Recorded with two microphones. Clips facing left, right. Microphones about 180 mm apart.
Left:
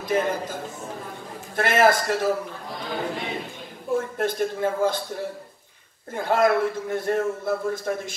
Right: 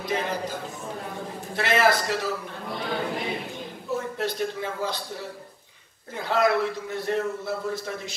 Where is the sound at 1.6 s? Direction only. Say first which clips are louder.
Left 3 dB; 50° left (ahead or behind).